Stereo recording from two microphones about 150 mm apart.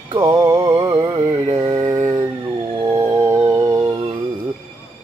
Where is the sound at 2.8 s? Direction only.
15° right (ahead or behind).